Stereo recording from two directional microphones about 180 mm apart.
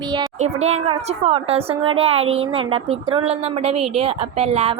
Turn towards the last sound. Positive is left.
turn(degrees=-35)  # may be behind; listen again after turning